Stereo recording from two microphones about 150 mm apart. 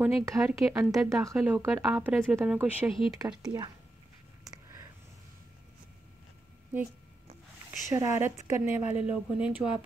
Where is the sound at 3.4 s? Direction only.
25° right (ahead or behind).